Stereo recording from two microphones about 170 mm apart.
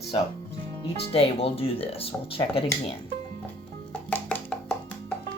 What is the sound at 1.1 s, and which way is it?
Speech, 35° left (ahead or behind).